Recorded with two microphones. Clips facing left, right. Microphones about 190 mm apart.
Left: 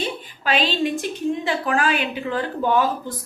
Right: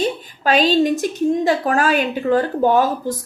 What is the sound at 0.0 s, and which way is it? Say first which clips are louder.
A woman's voice: right 6 dB; 45° right (ahead or behind).